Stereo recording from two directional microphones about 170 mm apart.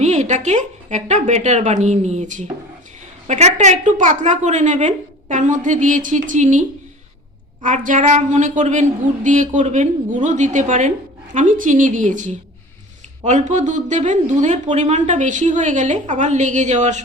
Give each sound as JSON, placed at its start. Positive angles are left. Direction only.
{"t": 0.0, "sound": "speech", "side_deg": -45}